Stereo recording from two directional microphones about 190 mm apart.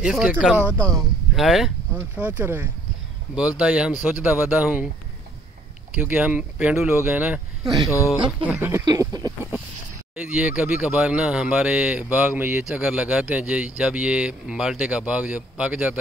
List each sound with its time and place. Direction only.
0.0 s speech: 5° right (ahead or behind)
5.9 s speech: 5° right (ahead or behind)
7.6 s speech: 20° right (ahead or behind)
8.5 s speech: 10° right (ahead or behind)
10.2 s speech: 5° right (ahead or behind)